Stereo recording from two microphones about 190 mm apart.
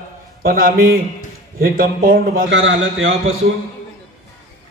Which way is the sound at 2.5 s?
90° right.